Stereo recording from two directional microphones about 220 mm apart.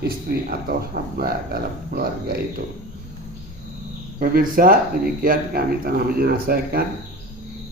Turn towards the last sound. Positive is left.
turn(degrees=-45)  # may be behind; listen again after turning